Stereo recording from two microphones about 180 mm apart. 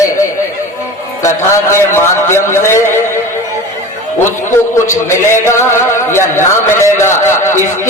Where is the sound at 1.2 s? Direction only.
15° left (ahead or behind).